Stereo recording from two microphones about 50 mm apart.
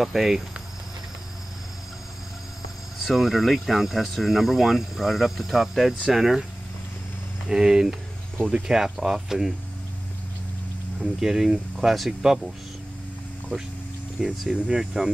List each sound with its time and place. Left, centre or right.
0.0 s speech: centre
3.0 s speech: centre
7.4 s speech: centre
11.0 s speech: centre